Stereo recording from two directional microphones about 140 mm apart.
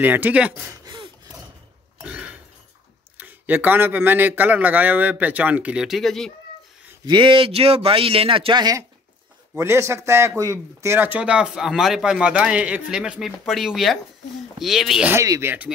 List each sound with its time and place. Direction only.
0.0 s a man's voice: 15° right (ahead or behind)
0.8 s gasp: 35° right (ahead or behind)
2.0 s burping: 10° right (ahead or behind)
3.2 s a man's voice: 15° right (ahead or behind)
7.1 s a man's voice: 35° right (ahead or behind); by 15.0 s centre (ahead or behind)
15.0 s speech: 20° right (ahead or behind)